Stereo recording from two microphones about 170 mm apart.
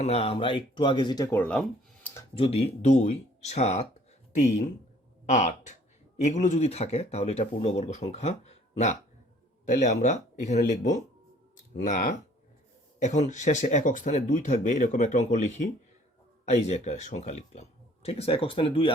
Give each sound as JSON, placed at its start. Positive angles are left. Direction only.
{"t": 0.0, "sound": "speech", "side_deg": 35}
{"t": 2.3, "sound": "speech", "side_deg": 35}